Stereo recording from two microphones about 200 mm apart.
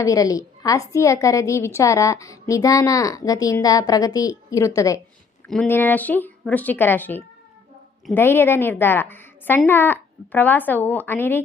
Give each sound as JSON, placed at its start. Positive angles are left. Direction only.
{"t": 0.0, "sound": "a woman's voice", "side_deg": 15}